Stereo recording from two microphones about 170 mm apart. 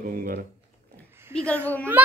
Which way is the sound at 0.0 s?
55° right (ahead or behind).